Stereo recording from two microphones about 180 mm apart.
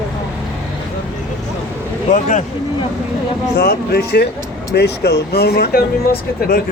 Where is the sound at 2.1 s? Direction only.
40° left (ahead or behind).